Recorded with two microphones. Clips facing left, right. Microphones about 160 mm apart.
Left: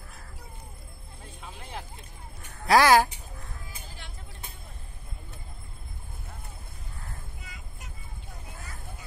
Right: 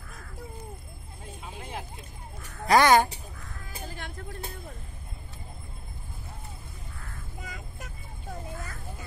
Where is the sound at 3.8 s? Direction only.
50° right (ahead or behind).